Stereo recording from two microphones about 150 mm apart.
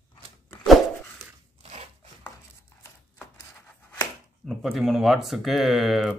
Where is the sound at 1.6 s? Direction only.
40° right (ahead or behind).